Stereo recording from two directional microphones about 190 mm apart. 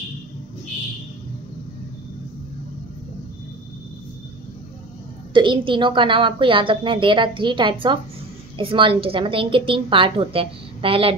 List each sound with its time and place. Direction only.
5.3 s a woman's voice: 25° right (ahead or behind)